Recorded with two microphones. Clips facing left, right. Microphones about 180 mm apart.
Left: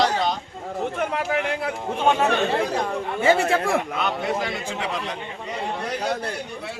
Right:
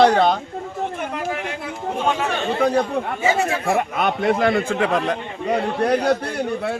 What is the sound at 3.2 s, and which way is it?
Speech, 55° left (ahead or behind).